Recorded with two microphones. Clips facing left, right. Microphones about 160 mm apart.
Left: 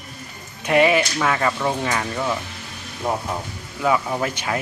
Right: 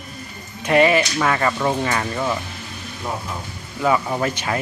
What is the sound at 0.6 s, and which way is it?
Speech, 10° left (ahead or behind).